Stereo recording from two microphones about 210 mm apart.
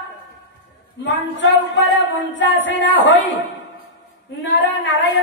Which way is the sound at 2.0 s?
60° left (ahead or behind).